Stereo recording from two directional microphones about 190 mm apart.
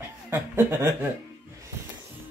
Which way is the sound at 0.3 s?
10° right (ahead or behind).